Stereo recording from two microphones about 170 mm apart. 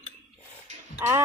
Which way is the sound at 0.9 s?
15° right (ahead or behind).